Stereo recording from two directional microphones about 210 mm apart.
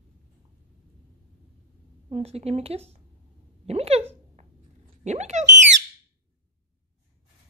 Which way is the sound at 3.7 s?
30° right (ahead or behind).